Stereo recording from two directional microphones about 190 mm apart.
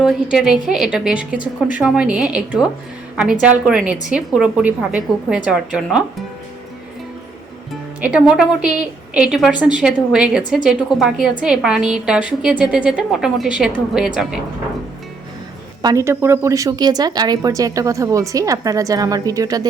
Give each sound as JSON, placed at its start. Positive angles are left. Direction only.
{"t": 0.0, "sound": "a woman's voice", "side_deg": 0}
{"t": 8.0, "sound": "a woman's voice", "side_deg": -5}
{"t": 15.8, "sound": "a woman's voice", "side_deg": -20}